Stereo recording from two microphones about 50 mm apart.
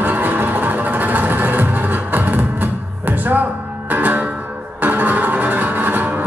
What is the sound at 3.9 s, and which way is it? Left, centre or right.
Music, right.